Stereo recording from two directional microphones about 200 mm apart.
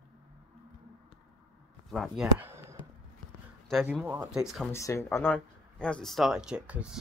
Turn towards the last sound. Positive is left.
turn(degrees=-5)  # may be behind; listen again after turning